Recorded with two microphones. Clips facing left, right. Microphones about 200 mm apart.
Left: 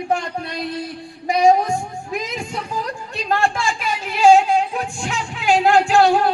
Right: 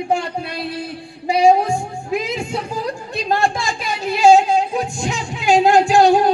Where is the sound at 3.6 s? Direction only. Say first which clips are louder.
Right 1 dB; 40° right (ahead or behind).